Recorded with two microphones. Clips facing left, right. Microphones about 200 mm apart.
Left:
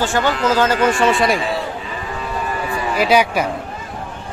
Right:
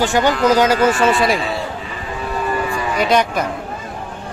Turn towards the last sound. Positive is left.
turn(degrees=5)  # may be behind; listen again after turning